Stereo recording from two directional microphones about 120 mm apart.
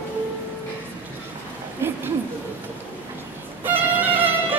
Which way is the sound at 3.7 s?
15° right (ahead or behind).